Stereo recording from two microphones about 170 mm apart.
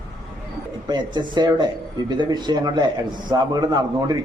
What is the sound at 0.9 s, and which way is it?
A man's voice, 25° right (ahead or behind).